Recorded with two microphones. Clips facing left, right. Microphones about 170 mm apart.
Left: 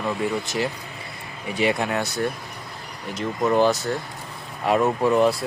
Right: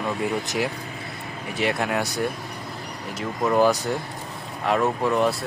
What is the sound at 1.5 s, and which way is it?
Speech, centre (ahead or behind).